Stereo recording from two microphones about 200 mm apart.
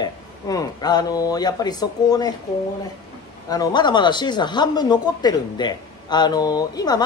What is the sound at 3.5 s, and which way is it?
Speech, 20° left (ahead or behind).